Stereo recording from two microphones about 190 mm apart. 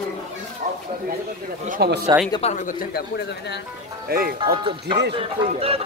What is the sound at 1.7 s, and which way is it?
Speech, 60° right (ahead or behind).